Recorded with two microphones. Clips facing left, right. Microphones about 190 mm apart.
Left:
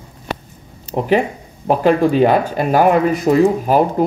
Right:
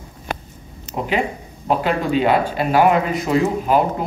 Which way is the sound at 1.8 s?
45° left (ahead or behind).